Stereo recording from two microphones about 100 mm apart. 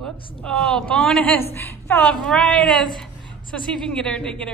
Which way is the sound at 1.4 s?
25° left (ahead or behind).